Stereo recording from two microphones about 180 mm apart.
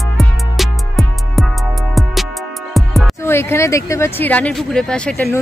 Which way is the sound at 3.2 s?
15° left (ahead or behind).